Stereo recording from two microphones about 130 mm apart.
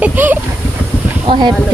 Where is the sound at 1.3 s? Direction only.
40° right (ahead or behind).